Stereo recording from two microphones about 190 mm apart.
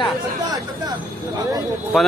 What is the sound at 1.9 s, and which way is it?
Speech, centre (ahead or behind).